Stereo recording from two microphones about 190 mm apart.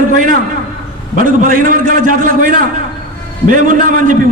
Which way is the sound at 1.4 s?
45° right (ahead or behind).